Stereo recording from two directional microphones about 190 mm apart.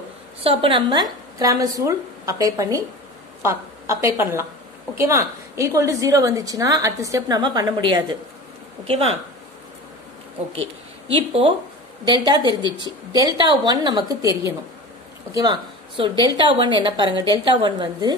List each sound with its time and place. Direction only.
0.4 s a woman's voice: 30° right (ahead or behind)
11.1 s a woman's voice: 25° right (ahead or behind)
15.3 s a woman's voice: 20° right (ahead or behind)